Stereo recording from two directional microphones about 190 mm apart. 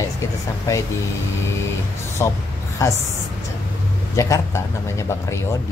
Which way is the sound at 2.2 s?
15° left (ahead or behind).